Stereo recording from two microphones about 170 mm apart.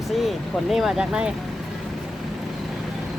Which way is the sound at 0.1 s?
Centre (ahead or behind).